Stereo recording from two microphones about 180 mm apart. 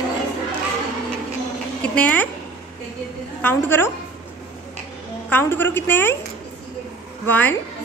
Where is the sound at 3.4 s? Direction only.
10° left (ahead or behind).